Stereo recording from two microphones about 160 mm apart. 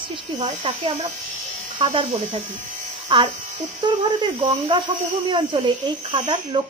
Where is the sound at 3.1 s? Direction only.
30° right (ahead or behind).